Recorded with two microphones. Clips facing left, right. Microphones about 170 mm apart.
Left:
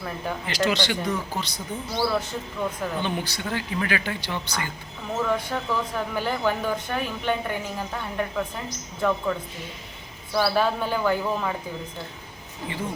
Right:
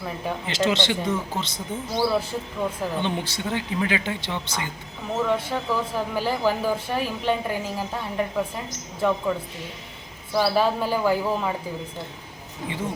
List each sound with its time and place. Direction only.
0.4 s speech: 25° right (ahead or behind)
2.6 s speech: 5° right (ahead or behind)
3.0 s speech: 25° right (ahead or behind)
5.1 s speech: centre (ahead or behind)
10.3 s speech: centre (ahead or behind)